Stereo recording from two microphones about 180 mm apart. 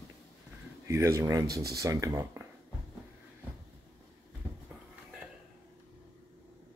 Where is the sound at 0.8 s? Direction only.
15° right (ahead or behind).